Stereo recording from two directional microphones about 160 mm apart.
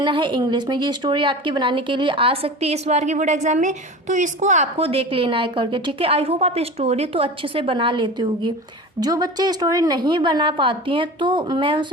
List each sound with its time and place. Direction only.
0.0 s a woman's voice: 30° right (ahead or behind)